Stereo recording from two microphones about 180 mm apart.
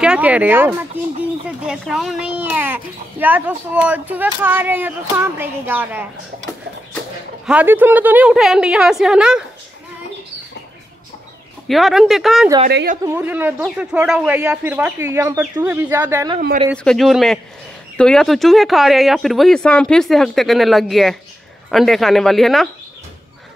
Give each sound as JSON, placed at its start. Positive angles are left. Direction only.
{"t": 0.0, "sound": "speech", "side_deg": -5}
{"t": 7.4, "sound": "speech", "side_deg": -10}
{"t": 11.6, "sound": "speech", "side_deg": 0}
{"t": 12.6, "sound": "a woman's voice", "side_deg": -55}
{"t": 13.0, "sound": "speech", "side_deg": -10}
{"t": 16.3, "sound": "a woman's voice", "side_deg": -50}
{"t": 16.7, "sound": "speech", "side_deg": 5}